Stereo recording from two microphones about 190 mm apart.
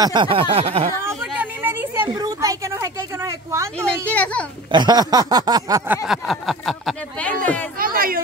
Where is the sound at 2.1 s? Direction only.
20° right (ahead or behind).